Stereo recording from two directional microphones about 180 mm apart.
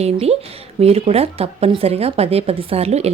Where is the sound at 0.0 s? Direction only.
35° right (ahead or behind).